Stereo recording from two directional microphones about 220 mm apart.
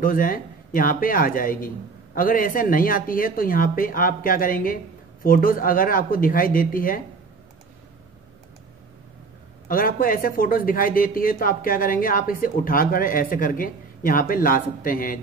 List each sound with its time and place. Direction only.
0.0 s speech: 40° left (ahead or behind)
9.7 s speech: 40° left (ahead or behind)